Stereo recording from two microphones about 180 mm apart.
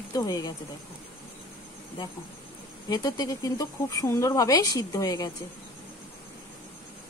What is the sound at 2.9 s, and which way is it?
Speech, 20° left (ahead or behind).